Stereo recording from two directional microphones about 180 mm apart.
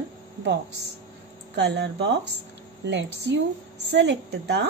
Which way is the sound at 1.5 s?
70° right (ahead or behind).